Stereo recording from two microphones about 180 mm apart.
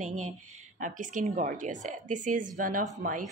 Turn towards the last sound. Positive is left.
turn(degrees=-50)  # may be behind; listen again after turning